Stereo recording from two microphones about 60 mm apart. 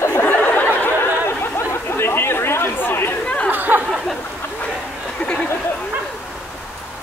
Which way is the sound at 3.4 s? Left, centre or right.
Right.